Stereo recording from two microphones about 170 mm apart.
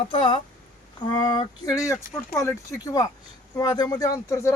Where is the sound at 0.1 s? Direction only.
30° left (ahead or behind).